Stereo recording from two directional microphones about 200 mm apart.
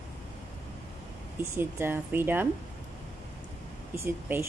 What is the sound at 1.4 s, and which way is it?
Speech, 10° right (ahead or behind).